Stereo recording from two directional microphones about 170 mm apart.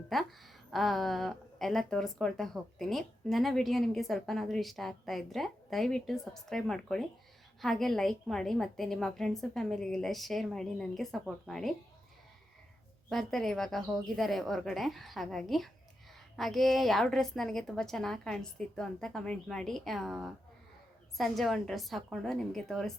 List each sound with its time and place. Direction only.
0.1 s speech: centre (ahead or behind)
13.1 s speech: centre (ahead or behind)